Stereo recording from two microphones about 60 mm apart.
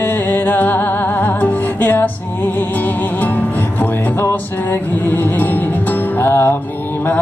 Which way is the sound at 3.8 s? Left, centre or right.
Left.